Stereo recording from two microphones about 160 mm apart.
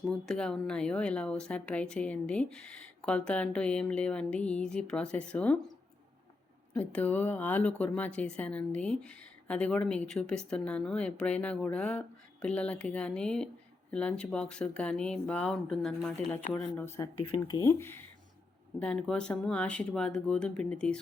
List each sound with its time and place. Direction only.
0.1 s speech: 5° left (ahead or behind)
6.7 s speech: 10° left (ahead or behind)